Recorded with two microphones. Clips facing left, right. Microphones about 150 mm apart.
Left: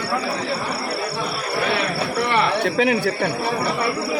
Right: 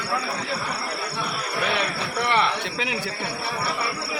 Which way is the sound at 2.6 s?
55° left (ahead or behind).